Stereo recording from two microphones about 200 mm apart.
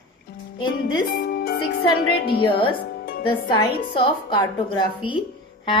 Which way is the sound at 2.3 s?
25° left (ahead or behind).